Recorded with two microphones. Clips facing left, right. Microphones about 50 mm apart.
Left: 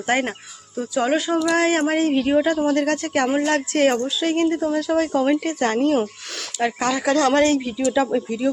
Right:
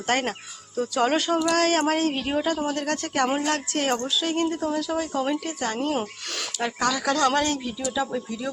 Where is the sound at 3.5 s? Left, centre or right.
Left.